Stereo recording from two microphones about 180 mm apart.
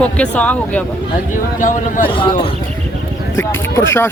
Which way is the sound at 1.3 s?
45° left (ahead or behind).